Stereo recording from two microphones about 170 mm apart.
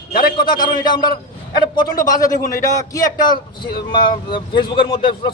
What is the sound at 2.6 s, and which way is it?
A man's voice, 20° left (ahead or behind).